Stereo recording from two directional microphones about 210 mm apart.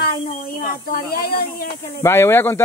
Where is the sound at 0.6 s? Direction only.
45° left (ahead or behind).